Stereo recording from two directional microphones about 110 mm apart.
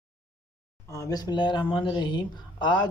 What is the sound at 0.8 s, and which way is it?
Speech, 30° left (ahead or behind).